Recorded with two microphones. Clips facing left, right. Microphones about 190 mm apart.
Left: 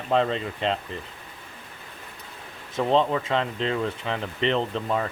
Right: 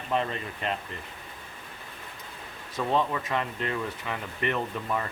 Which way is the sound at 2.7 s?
20° left (ahead or behind).